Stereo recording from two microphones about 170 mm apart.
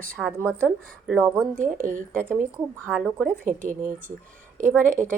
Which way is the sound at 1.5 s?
50° right (ahead or behind).